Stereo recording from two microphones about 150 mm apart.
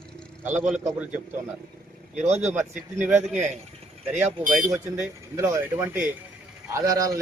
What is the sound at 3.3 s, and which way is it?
Speech, 55° right (ahead or behind).